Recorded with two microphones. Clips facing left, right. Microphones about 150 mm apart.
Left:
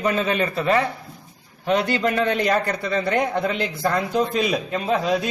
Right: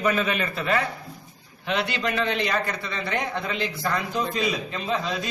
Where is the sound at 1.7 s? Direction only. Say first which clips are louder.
Left 6 dB; 45° left (ahead or behind).